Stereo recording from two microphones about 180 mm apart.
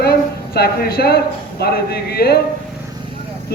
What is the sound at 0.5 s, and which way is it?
A man's voice, 60° left (ahead or behind).